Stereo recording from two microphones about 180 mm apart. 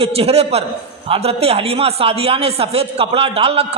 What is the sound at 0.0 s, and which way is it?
A man's voice, 35° right (ahead or behind).